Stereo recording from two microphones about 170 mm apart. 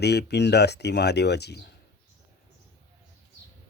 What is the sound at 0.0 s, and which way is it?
Speech, 75° left (ahead or behind).